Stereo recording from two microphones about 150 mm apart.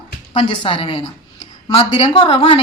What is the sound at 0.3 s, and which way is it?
A woman's voice, 35° left (ahead or behind).